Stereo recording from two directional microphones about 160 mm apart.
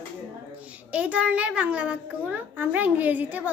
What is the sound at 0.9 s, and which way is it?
A woman's voice, 10° right (ahead or behind).